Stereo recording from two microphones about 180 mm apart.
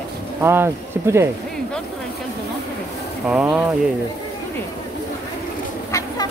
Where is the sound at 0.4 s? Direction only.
15° right (ahead or behind).